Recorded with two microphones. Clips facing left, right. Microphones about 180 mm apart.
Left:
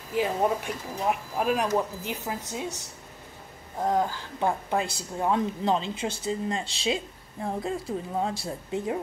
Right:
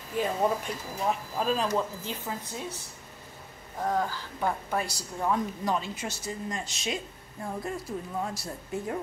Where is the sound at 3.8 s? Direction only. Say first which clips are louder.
Left 3 dB; 20° left (ahead or behind).